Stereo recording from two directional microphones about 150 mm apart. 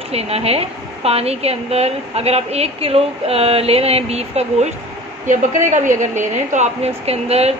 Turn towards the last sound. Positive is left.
turn(degrees=-45)  # may be behind; listen again after turning